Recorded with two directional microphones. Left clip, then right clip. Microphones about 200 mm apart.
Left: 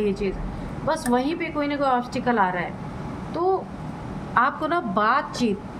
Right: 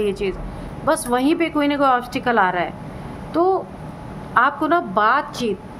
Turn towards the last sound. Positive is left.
turn(degrees=-25)  # may be behind; listen again after turning